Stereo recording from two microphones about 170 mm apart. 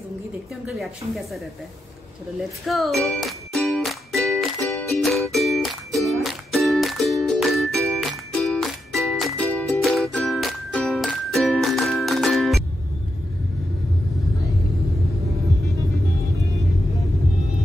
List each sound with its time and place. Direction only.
0.7 s speech: centre (ahead or behind)
2.6 s music: centre (ahead or behind)